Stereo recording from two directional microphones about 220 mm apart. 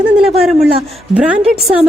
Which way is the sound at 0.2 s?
Centre (ahead or behind).